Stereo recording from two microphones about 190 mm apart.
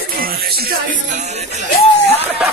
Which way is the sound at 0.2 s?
50° right (ahead or behind).